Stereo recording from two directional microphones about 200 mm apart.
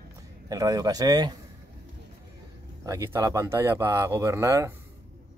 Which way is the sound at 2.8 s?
15° right (ahead or behind).